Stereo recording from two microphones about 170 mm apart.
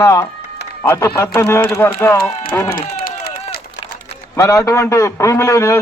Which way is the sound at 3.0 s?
60° left (ahead or behind).